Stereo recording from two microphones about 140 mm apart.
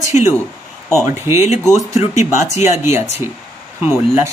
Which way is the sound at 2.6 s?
20° right (ahead or behind).